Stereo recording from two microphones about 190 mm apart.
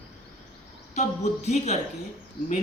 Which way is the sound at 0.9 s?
35° left (ahead or behind).